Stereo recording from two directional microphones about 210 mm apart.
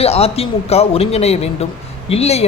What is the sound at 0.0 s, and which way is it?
Speech, 30° left (ahead or behind).